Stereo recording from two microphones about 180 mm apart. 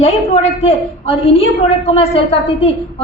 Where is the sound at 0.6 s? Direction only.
35° left (ahead or behind).